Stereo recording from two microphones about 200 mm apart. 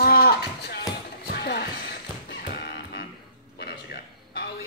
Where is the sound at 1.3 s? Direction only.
55° left (ahead or behind).